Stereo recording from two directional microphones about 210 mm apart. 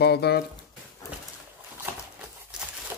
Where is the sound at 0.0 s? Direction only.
50° left (ahead or behind).